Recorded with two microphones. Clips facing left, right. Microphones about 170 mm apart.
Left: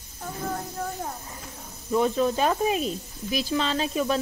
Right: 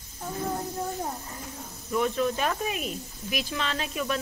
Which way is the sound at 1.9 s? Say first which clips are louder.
Left 3 dB; 30° left (ahead or behind).